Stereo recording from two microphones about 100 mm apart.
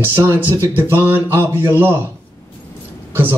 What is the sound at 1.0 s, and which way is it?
Speech, 20° right (ahead or behind).